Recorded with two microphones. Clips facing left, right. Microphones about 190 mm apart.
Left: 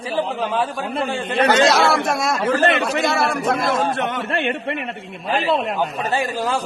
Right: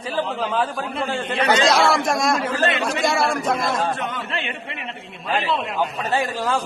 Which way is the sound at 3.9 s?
70° left (ahead or behind).